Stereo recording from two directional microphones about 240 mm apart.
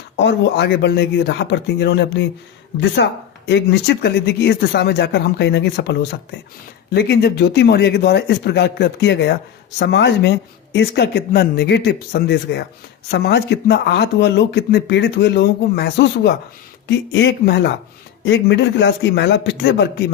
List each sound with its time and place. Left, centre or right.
0.2 s speech: left